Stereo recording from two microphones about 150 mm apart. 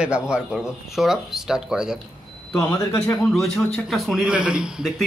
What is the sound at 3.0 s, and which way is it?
A man's voice, 5° left (ahead or behind).